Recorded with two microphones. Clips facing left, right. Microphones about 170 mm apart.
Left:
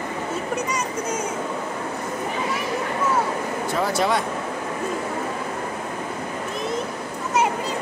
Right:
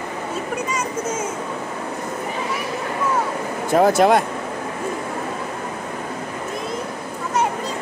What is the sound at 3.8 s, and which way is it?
Speech, 50° right (ahead or behind).